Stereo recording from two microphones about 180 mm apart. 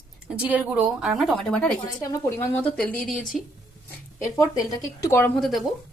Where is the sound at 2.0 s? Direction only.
15° left (ahead or behind); by 3.4 s centre (ahead or behind).